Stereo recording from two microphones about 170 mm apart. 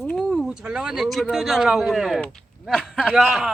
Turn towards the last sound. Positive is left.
turn(degrees=0)  # may be behind; listen again after turning